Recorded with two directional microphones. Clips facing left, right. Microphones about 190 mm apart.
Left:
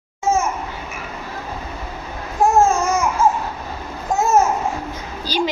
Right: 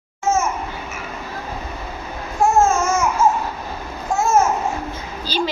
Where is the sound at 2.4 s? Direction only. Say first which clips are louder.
Left 1 dB; 15° left (ahead or behind).